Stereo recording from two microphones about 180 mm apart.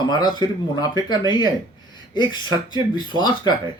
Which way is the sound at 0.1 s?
25° left (ahead or behind).